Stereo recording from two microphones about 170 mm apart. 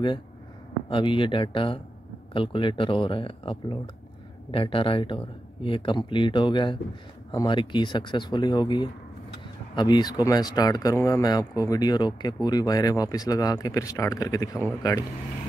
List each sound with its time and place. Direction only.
0.8 s speech: 30° left (ahead or behind)